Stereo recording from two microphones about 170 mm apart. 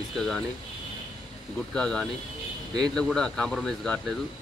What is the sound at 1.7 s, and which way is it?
Speech, 5° left (ahead or behind).